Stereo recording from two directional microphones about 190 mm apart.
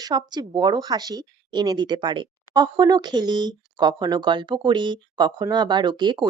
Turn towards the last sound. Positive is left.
turn(degrees=-25)  # may be behind; listen again after turning